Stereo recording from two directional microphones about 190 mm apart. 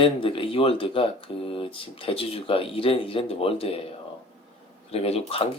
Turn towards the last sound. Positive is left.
turn(degrees=30)  # may be behind; listen again after turning